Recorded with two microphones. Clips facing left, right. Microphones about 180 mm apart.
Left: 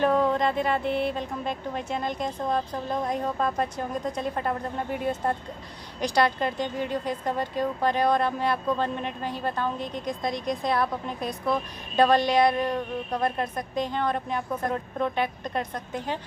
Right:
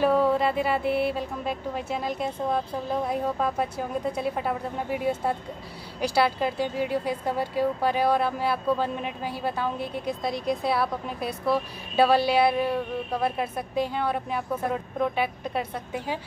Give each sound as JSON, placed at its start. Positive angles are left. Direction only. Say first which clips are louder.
{"t": 0.0, "sound": "speech", "louder": "right 1 dB", "side_deg": -5}